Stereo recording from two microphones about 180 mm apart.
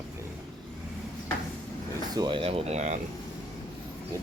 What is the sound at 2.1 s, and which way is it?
Speech, 25° right (ahead or behind).